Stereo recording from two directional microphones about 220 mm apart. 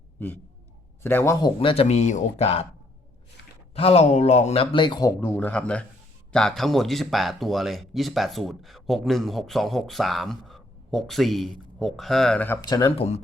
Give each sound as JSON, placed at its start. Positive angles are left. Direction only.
{"t": 1.0, "sound": "speech", "side_deg": 10}
{"t": 3.8, "sound": "speech", "side_deg": 30}
{"t": 12.6, "sound": "speech", "side_deg": 20}